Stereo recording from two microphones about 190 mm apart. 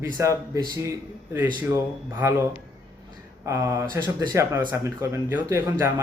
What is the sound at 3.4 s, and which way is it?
Speech, 15° right (ahead or behind).